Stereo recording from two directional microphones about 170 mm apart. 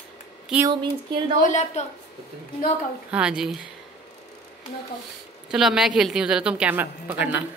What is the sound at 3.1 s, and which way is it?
Speech, 5° right (ahead or behind).